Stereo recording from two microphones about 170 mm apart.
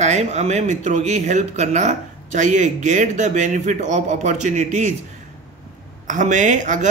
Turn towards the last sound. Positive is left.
turn(degrees=-45)  # may be behind; listen again after turning